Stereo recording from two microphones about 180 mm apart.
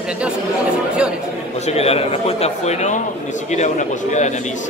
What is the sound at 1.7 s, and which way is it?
A man's voice, 35° left (ahead or behind).